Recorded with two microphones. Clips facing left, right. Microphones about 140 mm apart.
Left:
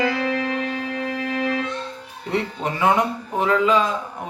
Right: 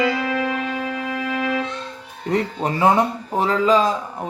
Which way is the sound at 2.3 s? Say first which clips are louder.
Right 3 dB; 35° right (ahead or behind).